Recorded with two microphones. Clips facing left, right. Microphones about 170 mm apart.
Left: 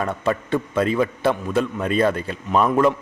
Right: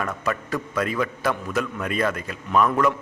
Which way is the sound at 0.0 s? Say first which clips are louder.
Left 4 dB; 30° left (ahead or behind).